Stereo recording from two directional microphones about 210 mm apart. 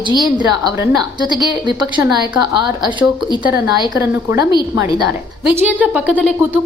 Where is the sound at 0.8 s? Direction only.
20° right (ahead or behind).